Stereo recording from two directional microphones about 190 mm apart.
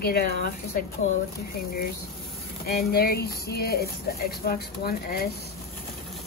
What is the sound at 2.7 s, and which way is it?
Speech, 55° left (ahead or behind).